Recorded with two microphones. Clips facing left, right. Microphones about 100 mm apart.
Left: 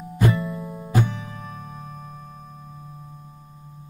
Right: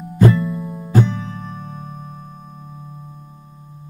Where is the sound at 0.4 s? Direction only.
Centre (ahead or behind).